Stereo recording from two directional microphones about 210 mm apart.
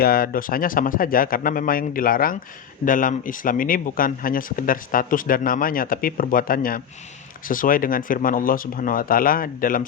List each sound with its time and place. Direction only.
0.0 s speech: 45° left (ahead or behind)